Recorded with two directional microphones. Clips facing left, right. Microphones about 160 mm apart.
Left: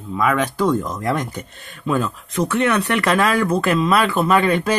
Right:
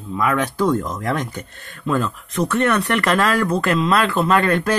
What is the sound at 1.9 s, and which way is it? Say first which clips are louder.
Speech: even; 15° left (ahead or behind).